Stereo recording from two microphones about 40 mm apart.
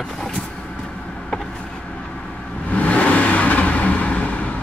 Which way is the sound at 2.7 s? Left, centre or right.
Left.